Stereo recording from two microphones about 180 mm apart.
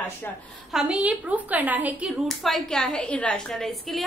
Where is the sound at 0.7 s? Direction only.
5° right (ahead or behind).